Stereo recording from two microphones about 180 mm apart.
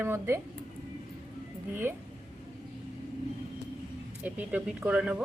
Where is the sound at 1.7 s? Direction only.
15° right (ahead or behind).